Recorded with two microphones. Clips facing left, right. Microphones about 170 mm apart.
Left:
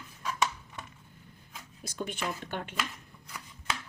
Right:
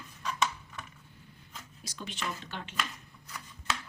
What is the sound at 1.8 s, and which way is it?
Speech, 55° left (ahead or behind).